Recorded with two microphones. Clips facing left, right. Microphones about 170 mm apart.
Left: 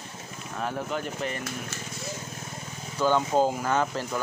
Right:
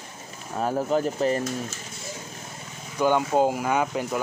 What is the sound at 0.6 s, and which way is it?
Speech, 35° right (ahead or behind).